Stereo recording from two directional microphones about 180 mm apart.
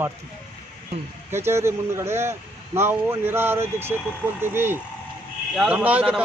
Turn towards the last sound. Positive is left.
turn(degrees=-5)  # may be behind; listen again after turning